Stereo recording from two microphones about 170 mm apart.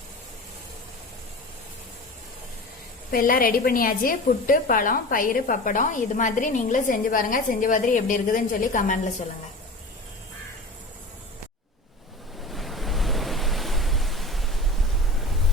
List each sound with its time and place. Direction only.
3.1 s a woman's voice: 60° left (ahead or behind)
12.5 s waves: centre (ahead or behind)